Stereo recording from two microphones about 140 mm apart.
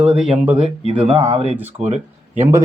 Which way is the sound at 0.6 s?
45° right (ahead or behind).